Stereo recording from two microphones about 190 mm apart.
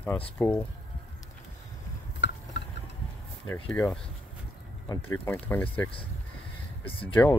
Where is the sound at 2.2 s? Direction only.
70° left (ahead or behind).